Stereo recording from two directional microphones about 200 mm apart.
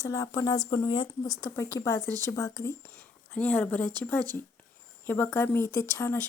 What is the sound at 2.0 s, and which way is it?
Speech, 20° right (ahead or behind).